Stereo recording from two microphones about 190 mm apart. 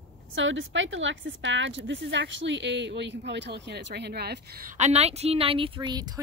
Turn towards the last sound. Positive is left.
turn(degrees=-20)  # may be behind; listen again after turning